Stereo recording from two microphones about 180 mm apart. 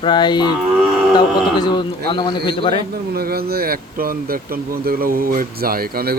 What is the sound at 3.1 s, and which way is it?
Speech, 60° right (ahead or behind).